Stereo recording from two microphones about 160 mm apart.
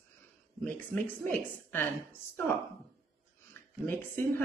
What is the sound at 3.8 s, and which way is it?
Speech, 10° left (ahead or behind).